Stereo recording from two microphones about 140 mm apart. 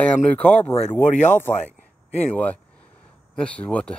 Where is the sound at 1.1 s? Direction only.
60° left (ahead or behind).